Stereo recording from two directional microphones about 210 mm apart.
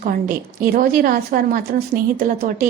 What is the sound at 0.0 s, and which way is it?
A woman's voice, 40° right (ahead or behind).